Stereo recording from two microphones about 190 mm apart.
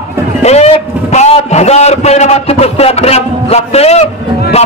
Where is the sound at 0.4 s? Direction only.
35° left (ahead or behind).